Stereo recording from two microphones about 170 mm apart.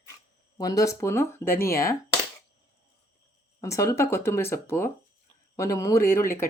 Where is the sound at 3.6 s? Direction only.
20° left (ahead or behind).